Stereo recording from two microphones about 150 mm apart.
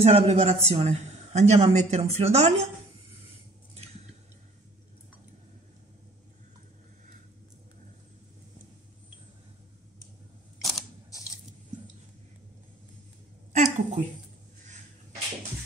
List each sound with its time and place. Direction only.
0.0 s a man's voice: 45° right (ahead or behind)
10.6 s camera: centre (ahead or behind)
13.5 s a sound: 50° right (ahead or behind)